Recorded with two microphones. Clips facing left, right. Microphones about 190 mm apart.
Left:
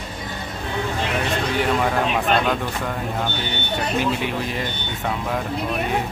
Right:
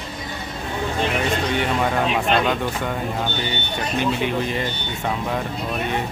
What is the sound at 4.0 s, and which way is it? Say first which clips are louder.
Speech: right 1 dB; 5° left (ahead or behind).